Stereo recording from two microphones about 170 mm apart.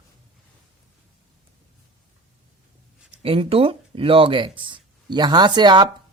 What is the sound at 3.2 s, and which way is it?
Speech, 35° right (ahead or behind).